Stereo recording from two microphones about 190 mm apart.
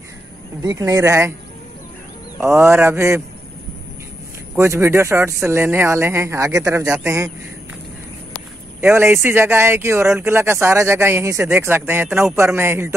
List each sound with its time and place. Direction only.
0.6 s speech: 20° right (ahead or behind)
2.4 s speech: 15° right (ahead or behind)
4.6 s speech: 15° right (ahead or behind)
8.8 s speech: 10° right (ahead or behind)